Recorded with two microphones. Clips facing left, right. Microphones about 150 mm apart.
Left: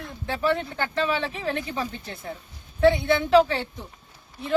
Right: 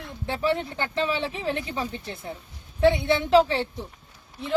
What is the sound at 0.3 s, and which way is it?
Speech, 20° right (ahead or behind).